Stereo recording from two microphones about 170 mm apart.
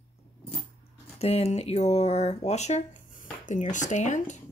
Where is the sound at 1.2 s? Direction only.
40° left (ahead or behind).